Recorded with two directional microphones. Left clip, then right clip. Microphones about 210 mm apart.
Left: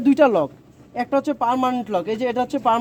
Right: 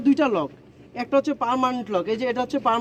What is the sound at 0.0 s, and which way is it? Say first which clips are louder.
Speech: left 5 dB; 30° left (ahead or behind).